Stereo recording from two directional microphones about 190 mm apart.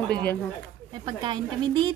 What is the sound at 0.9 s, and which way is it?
A woman's voice, 25° right (ahead or behind).